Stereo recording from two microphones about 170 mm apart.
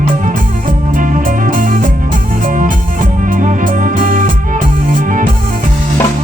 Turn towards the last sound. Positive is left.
turn(degrees=-55)  # may be behind; listen again after turning